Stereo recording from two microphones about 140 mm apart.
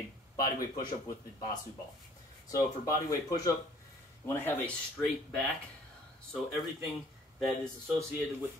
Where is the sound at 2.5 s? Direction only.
25° left (ahead or behind).